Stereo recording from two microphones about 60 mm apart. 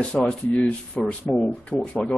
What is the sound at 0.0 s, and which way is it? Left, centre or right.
A man's voice, centre.